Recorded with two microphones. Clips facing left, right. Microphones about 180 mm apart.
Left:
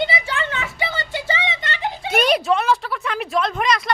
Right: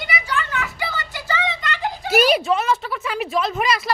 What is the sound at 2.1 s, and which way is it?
A woman's voice, 5° right (ahead or behind).